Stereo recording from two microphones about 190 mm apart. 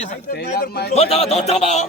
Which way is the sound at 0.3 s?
55° left (ahead or behind).